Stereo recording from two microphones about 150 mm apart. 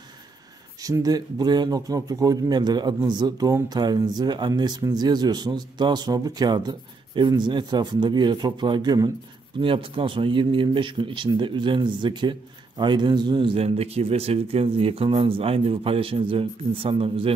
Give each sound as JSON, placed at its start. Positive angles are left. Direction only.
{"t": 0.7, "sound": "a man's voice", "side_deg": -25}